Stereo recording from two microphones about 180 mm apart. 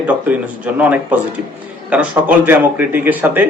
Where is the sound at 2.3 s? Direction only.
10° right (ahead or behind).